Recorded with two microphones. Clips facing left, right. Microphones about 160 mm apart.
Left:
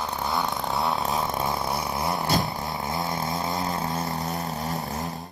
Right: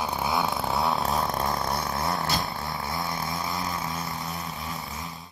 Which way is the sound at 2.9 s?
25° left (ahead or behind).